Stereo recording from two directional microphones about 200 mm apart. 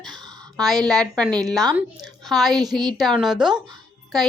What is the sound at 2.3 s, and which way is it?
Speech, centre (ahead or behind).